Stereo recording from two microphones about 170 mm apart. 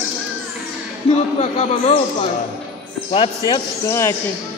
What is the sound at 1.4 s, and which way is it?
Speech, 40° left (ahead or behind).